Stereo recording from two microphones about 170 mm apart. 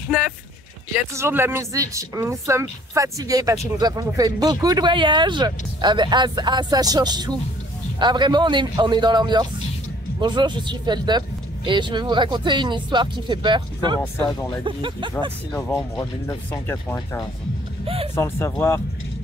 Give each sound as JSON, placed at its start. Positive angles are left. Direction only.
{"t": 1.1, "sound": "a woman's voice", "side_deg": -15}
{"t": 15.5, "sound": "speech", "side_deg": 20}
{"t": 17.8, "sound": "speech", "side_deg": -35}
{"t": 18.1, "sound": "speech", "side_deg": 15}